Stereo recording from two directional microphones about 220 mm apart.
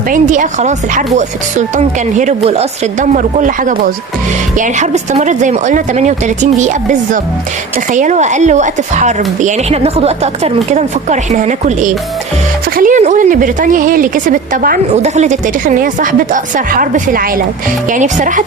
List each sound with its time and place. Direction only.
0.1 s a woman's voice: 35° right (ahead or behind)
7.9 s a woman's voice: 35° right (ahead or behind)